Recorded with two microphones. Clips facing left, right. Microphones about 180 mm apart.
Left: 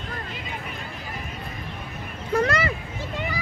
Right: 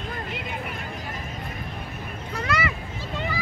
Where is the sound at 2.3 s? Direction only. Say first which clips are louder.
Left 5 dB; 40° left (ahead or behind).